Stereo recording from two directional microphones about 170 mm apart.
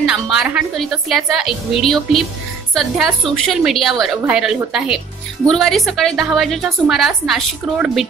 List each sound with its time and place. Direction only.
0.0 s a woman's voice: 5° right (ahead or behind)